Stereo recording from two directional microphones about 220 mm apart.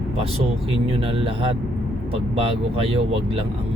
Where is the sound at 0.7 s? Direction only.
25° right (ahead or behind).